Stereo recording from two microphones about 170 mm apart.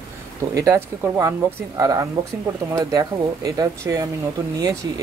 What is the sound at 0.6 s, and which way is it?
Speech, 15° right (ahead or behind).